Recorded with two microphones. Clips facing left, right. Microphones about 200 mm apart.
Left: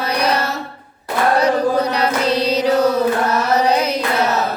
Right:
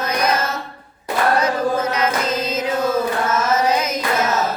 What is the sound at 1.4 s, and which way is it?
Chant, 40° left (ahead or behind).